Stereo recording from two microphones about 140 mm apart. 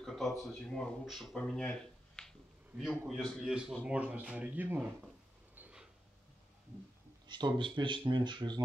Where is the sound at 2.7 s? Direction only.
Centre (ahead or behind).